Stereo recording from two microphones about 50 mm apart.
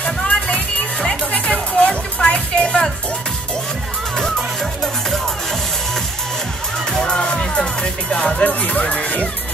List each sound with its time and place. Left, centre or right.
0.0 s music: left
4.2 s music: centre
6.9 s music: centre; by 9.3 s left